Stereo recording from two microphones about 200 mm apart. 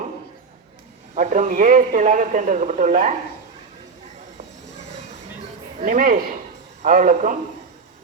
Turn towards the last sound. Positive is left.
turn(degrees=-40)  # may be behind; listen again after turning